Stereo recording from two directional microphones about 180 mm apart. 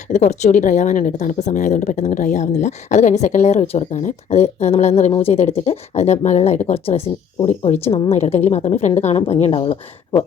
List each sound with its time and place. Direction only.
0.1 s a woman's voice: 40° left (ahead or behind)